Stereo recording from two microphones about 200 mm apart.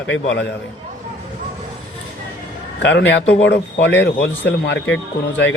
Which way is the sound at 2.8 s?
65° left (ahead or behind).